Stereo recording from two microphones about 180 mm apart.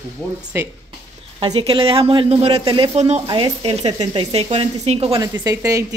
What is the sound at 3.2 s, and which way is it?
Speech, 25° right (ahead or behind).